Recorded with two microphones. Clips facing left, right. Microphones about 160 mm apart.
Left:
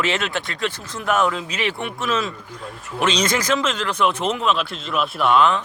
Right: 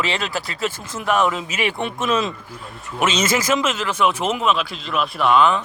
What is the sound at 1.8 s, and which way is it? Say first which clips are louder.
Speech: right 5 dB; 20° right (ahead or behind).